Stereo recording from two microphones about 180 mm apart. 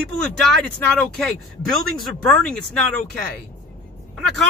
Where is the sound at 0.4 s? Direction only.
Centre (ahead or behind).